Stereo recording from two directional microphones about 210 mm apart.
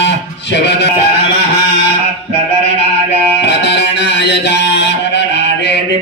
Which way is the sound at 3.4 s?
55° left (ahead or behind).